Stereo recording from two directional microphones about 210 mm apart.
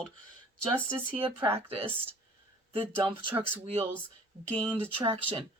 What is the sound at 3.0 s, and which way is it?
Speech, 25° right (ahead or behind).